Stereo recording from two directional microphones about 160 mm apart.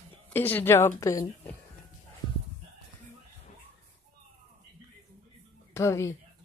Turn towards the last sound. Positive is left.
turn(degrees=15)  # may be behind; listen again after turning